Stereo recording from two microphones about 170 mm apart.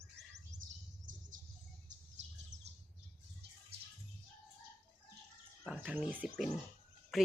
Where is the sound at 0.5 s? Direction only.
50° right (ahead or behind).